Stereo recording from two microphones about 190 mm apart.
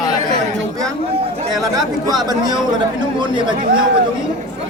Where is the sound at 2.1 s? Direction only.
5° right (ahead or behind).